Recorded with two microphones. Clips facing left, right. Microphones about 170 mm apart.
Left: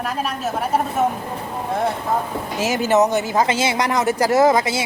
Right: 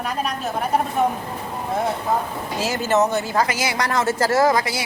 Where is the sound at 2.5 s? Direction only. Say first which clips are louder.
Left 3 dB; 15° left (ahead or behind).